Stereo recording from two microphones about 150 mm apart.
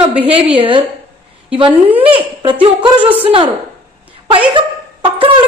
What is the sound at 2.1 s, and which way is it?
A woman's voice, 35° right (ahead or behind).